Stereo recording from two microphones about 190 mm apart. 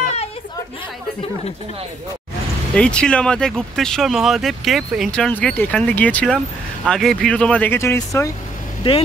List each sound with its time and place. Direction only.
0.0 s chatter: 35° left (ahead or behind)
2.7 s speech: 5° left (ahead or behind)
8.8 s speech: 30° left (ahead or behind)